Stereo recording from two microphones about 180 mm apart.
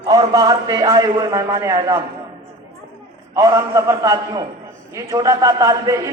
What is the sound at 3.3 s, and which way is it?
A man's voice, 20° right (ahead or behind).